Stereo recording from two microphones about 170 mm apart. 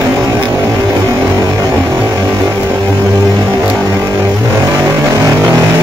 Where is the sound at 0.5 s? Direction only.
20° right (ahead or behind).